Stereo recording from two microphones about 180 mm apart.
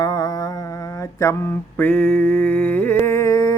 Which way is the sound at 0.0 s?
20° left (ahead or behind).